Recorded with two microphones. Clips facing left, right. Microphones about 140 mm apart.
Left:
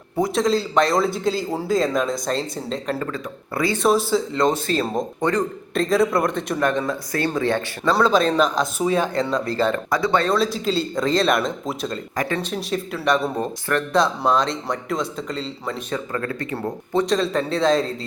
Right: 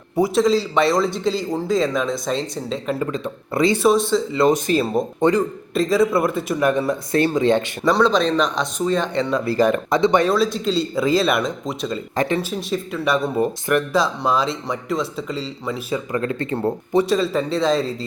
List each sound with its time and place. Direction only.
0.2 s a man's voice: centre (ahead or behind)
3.0 s speech: 20° right (ahead or behind)
3.8 s a man's voice: centre (ahead or behind)
4.5 s a man's voice: 15° right (ahead or behind)
7.9 s a man's voice: 5° left (ahead or behind)
9.5 s speech: 15° right (ahead or behind)
10.3 s a man's voice: centre (ahead or behind)
12.1 s speech: 25° right (ahead or behind)
12.4 s a man's voice: centre (ahead or behind)
16.1 s speech: 20° right (ahead or behind)
16.9 s a man's voice: 5° right (ahead or behind)